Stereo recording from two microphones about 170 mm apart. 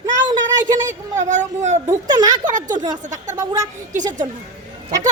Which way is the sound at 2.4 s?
50° right (ahead or behind).